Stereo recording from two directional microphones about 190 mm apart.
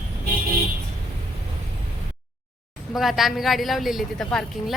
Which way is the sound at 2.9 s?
Centre (ahead or behind).